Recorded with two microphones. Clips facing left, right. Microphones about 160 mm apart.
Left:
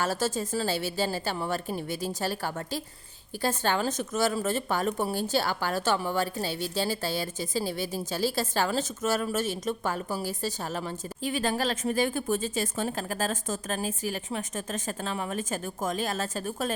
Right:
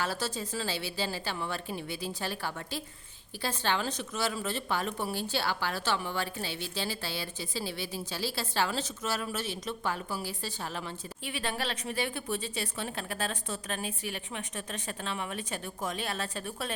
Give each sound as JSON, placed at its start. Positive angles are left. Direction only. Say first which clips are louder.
{"t": 0.0, "sound": "a woman's voice", "louder": "left 5 dB", "side_deg": 45}